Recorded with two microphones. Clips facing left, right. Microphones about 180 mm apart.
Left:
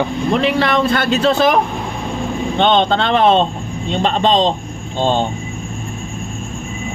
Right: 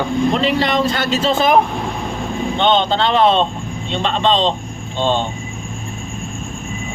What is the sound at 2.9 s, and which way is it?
Speech, 55° left (ahead or behind).